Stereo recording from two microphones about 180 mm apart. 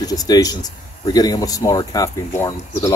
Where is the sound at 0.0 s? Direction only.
20° left (ahead or behind).